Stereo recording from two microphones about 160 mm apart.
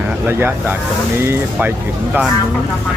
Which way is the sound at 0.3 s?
15° right (ahead or behind).